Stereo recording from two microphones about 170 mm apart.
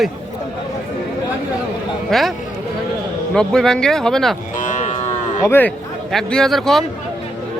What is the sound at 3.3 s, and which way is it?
A man's voice, 5° left (ahead or behind).